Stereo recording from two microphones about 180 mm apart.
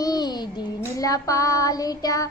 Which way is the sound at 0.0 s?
20° left (ahead or behind).